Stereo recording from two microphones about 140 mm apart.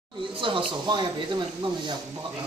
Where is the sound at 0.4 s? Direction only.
35° right (ahead or behind).